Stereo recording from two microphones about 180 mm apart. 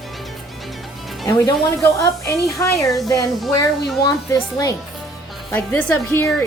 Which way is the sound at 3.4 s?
Centre (ahead or behind).